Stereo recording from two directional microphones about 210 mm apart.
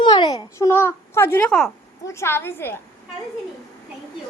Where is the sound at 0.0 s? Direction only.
20° left (ahead or behind); by 1.7 s 5° left (ahead or behind).